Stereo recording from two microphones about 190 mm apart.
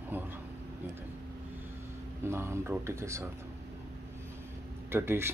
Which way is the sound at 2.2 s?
15° right (ahead or behind).